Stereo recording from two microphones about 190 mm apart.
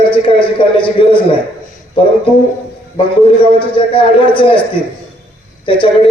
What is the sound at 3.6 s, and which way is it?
Speech, 25° left (ahead or behind).